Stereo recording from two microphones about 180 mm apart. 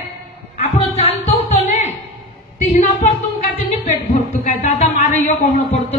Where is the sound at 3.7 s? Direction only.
35° left (ahead or behind).